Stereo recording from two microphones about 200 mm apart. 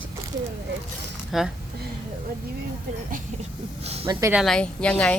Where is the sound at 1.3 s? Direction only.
Centre (ahead or behind).